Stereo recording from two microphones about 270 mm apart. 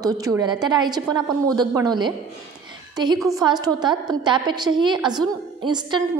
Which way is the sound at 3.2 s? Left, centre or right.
Centre.